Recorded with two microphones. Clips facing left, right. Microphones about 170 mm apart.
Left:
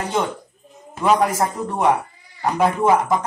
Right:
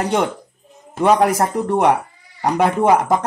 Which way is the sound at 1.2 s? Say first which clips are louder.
Right 4 dB; 70° right (ahead or behind).